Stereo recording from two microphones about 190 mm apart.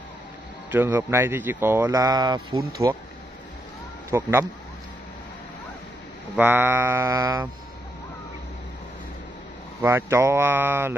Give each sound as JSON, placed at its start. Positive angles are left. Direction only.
{"t": 0.7, "sound": "speech", "side_deg": -10}
{"t": 4.1, "sound": "speech", "side_deg": -15}
{"t": 6.3, "sound": "speech", "side_deg": -10}
{"t": 9.8, "sound": "speech", "side_deg": -15}